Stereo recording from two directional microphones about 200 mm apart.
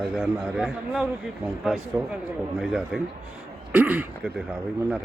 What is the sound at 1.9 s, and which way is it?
Speech, 15° right (ahead or behind).